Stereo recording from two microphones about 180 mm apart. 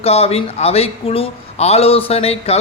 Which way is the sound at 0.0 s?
35° left (ahead or behind).